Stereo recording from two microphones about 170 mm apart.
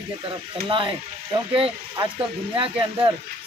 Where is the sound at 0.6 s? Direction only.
30° right (ahead or behind).